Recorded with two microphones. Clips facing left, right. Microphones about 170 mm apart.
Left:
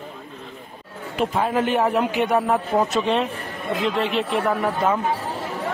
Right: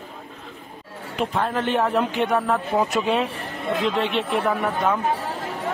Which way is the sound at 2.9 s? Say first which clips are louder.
Left 1 dB; 5° right (ahead or behind).